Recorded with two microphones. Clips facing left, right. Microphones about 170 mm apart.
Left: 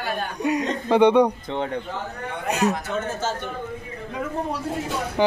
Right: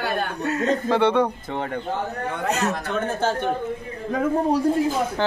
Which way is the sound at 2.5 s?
15° left (ahead or behind).